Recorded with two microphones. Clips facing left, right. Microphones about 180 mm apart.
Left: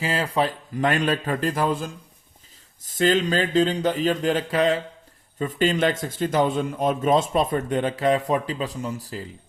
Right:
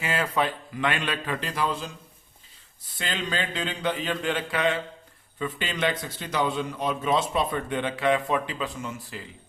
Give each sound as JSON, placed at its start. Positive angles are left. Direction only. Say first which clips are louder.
{"t": 0.0, "sound": "a man's voice", "louder": "left 3 dB", "side_deg": 35}